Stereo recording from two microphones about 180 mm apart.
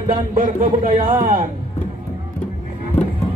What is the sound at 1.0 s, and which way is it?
Music, 30° right (ahead or behind).